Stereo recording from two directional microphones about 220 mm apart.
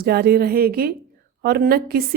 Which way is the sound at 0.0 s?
45° right (ahead or behind).